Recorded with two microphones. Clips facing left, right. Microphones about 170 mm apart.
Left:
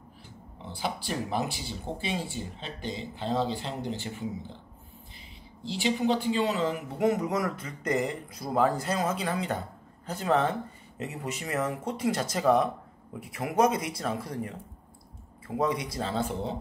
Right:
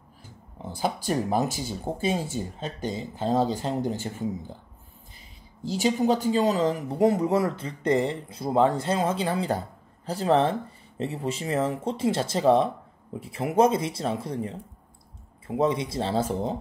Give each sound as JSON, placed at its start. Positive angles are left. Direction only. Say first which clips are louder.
{"t": 0.6, "sound": "speech", "louder": "right 5 dB", "side_deg": -45}
{"t": 5.6, "sound": "speech", "louder": "right 4 dB", "side_deg": -45}